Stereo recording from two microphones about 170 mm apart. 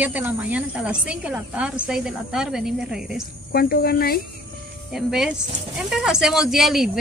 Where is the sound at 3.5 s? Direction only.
60° left (ahead or behind).